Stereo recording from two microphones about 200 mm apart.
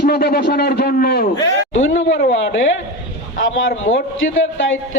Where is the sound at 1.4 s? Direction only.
70° left (ahead or behind).